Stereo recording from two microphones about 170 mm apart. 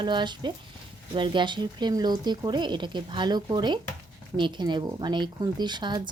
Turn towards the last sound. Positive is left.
turn(degrees=-25)  # may be behind; listen again after turning